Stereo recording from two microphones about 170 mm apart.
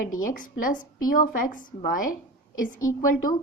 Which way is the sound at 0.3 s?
50° left (ahead or behind).